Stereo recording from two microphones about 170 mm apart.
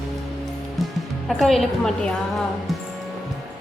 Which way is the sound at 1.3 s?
Centre (ahead or behind).